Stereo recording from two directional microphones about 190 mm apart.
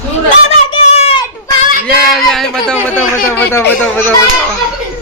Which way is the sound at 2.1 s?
Centre (ahead or behind).